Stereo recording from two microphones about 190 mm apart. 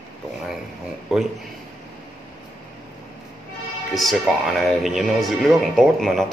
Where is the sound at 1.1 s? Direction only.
Centre (ahead or behind).